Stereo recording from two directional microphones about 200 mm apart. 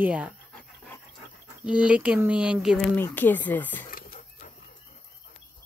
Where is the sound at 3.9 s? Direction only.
40° left (ahead or behind).